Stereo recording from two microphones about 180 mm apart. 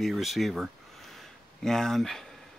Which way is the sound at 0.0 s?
Centre (ahead or behind).